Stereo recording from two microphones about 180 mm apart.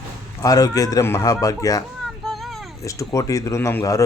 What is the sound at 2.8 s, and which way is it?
Speech, 15° left (ahead or behind).